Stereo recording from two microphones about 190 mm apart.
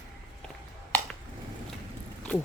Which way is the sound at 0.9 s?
10° left (ahead or behind).